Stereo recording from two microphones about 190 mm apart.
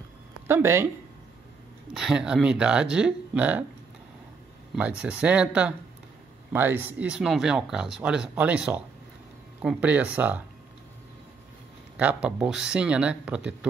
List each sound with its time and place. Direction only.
0.5 s speech: 15° right (ahead or behind)
2.0 s speech: 5° right (ahead or behind)
4.7 s speech: 5° right (ahead or behind)
12.0 s speech: 5° right (ahead or behind)